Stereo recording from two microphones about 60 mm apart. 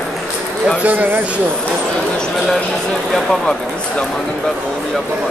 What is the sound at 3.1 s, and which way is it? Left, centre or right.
Speech, centre.